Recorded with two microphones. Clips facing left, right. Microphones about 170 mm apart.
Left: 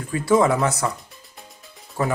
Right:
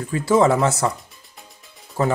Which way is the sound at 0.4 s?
25° right (ahead or behind).